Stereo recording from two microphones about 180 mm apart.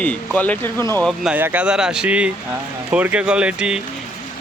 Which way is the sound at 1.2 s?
10° right (ahead or behind).